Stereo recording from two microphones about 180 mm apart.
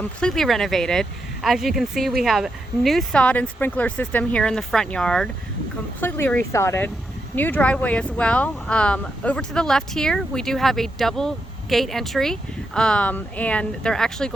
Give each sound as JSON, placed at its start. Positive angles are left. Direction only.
{"t": 0.2, "sound": "speech", "side_deg": 5}